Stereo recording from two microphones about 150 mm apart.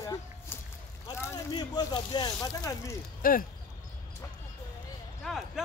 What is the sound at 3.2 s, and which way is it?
Speech, 70° left (ahead or behind).